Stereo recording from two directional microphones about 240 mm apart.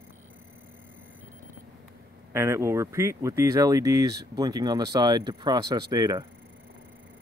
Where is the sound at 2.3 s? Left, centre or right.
Centre.